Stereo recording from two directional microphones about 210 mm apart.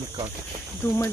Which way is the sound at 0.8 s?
10° left (ahead or behind).